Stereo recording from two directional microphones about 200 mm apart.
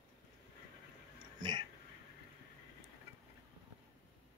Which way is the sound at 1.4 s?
20° right (ahead or behind).